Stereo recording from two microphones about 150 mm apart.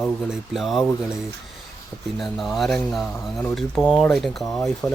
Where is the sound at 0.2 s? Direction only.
5° right (ahead or behind).